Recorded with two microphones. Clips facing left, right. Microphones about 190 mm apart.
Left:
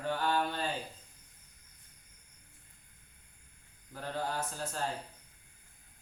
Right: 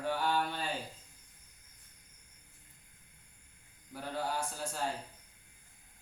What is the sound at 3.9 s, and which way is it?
Mantra, 10° right (ahead or behind).